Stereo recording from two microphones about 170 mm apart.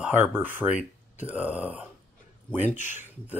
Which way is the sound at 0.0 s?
10° right (ahead or behind).